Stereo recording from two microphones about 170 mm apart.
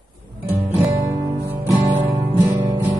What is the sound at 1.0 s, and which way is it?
Music, 20° right (ahead or behind).